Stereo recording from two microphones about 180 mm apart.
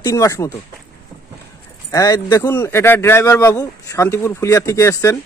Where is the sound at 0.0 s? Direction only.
20° left (ahead or behind).